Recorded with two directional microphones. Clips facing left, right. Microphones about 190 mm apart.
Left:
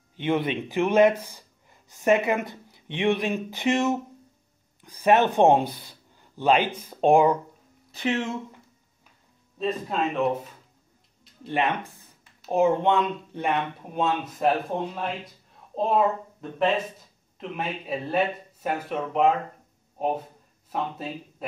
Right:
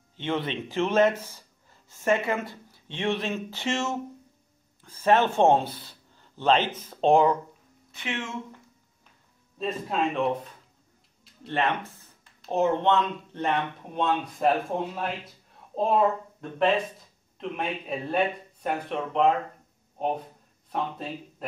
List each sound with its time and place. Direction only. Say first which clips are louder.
0.2 s speech: left 4 dB; 15° left (ahead or behind)
7.9 s speech: left 7 dB; 35° left (ahead or behind)
9.6 s speech: left 1 dB; centre (ahead or behind)
11.6 s speech: left 1 dB; 15° left (ahead or behind)
20.7 s speech: left 1 dB; 5° left (ahead or behind)